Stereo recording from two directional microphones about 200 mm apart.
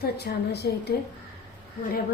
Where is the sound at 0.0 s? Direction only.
55° left (ahead or behind).